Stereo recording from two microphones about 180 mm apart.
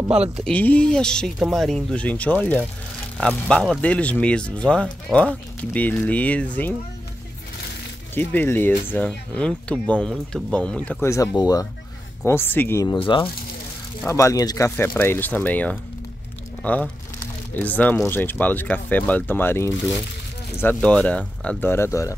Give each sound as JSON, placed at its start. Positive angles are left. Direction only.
{"t": 0.4, "sound": "speech", "side_deg": 5}
{"t": 8.1, "sound": "speech", "side_deg": 10}
{"t": 12.8, "sound": "speech", "side_deg": 25}